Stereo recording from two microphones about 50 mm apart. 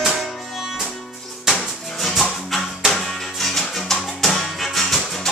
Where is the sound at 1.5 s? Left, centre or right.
Centre.